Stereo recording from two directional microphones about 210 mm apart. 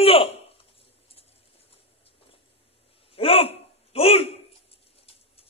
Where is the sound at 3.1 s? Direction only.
25° left (ahead or behind).